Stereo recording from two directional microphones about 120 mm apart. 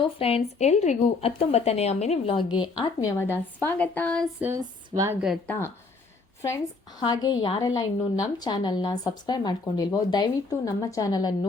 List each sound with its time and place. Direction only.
0.0 s speech: 55° left (ahead or behind); by 3.1 s 35° left (ahead or behind)
3.2 s a woman's voice: 20° left (ahead or behind)
4.5 s speech: 25° right (ahead or behind)
5.5 s speech: 20° left (ahead or behind)
7.0 s a woman's voice: 40° left (ahead or behind)